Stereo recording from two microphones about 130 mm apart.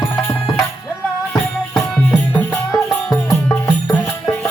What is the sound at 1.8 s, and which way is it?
Music, 10° left (ahead or behind).